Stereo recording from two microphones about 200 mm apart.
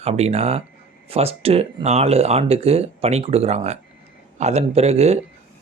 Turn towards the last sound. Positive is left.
turn(degrees=-30)  # may be behind; listen again after turning